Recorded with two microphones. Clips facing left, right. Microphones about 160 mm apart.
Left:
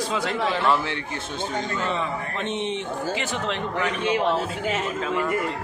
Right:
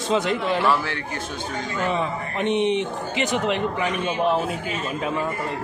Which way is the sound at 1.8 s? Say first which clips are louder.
Right 2 dB; 15° right (ahead or behind).